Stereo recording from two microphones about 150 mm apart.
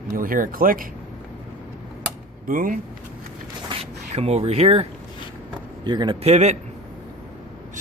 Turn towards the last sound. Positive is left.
turn(degrees=-45)  # may be behind; listen again after turning